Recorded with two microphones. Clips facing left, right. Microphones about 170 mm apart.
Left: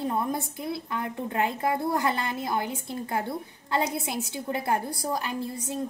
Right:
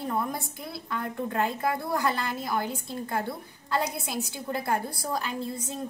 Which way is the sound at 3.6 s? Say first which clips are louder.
Left 1 dB; 20° left (ahead or behind).